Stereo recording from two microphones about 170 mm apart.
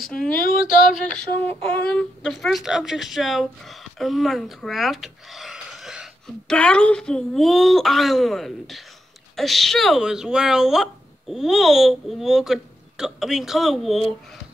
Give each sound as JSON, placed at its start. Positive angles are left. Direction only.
{"t": 0.0, "sound": "speech", "side_deg": 5}